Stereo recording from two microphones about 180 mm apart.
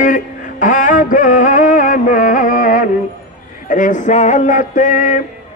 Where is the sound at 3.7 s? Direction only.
45° left (ahead or behind).